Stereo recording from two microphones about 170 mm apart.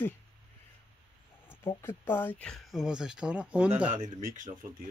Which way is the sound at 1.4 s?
15° left (ahead or behind).